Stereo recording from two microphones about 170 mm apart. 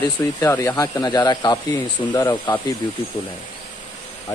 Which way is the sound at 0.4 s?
15° left (ahead or behind).